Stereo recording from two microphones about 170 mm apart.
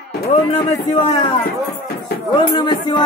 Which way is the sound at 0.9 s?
35° left (ahead or behind).